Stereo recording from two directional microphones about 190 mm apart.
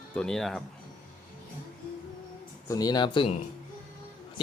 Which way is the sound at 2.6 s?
20° left (ahead or behind).